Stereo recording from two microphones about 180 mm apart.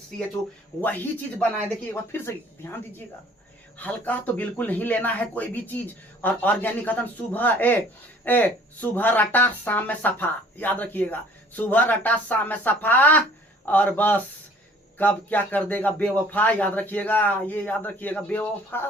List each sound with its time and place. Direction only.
0.8 s speech: 10° left (ahead or behind)
3.8 s speech: 10° left (ahead or behind)